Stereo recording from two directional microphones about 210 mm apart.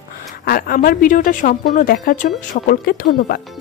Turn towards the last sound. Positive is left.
turn(degrees=45)  # may be behind; listen again after turning